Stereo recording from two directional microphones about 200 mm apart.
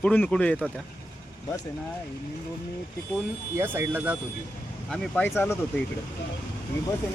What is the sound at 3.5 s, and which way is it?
Speech, 10° right (ahead or behind).